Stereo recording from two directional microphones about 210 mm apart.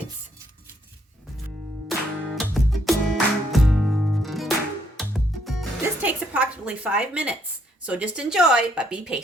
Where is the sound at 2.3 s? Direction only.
Centre (ahead or behind).